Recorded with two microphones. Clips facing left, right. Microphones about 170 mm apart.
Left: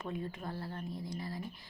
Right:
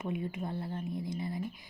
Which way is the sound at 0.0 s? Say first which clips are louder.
Right 4 dB; 20° right (ahead or behind).